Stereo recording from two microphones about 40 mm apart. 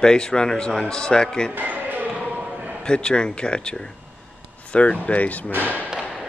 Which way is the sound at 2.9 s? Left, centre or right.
Left.